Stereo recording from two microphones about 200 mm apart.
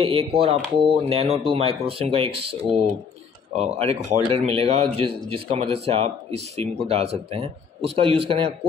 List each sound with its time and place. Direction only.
0.0 s speech: 25° right (ahead or behind)
3.5 s speech: 30° right (ahead or behind)